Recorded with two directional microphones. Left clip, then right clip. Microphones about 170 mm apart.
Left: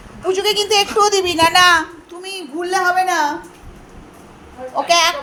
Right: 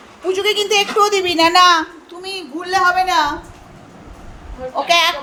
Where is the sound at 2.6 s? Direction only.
30° left (ahead or behind).